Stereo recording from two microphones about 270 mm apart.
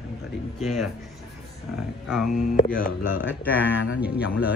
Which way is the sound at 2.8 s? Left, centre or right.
Left.